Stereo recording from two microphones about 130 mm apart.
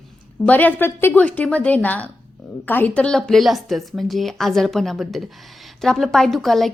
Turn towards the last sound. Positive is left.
turn(degrees=0)  # may be behind; listen again after turning